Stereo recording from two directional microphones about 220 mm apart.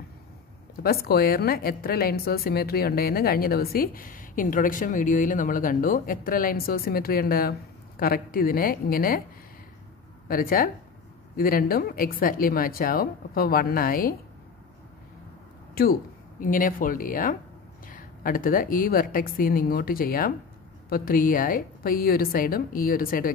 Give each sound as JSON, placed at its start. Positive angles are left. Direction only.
{"t": 0.8, "sound": "a woman's voice", "side_deg": 45}
{"t": 10.2, "sound": "speech", "side_deg": 40}
{"t": 15.7, "sound": "speech", "side_deg": 45}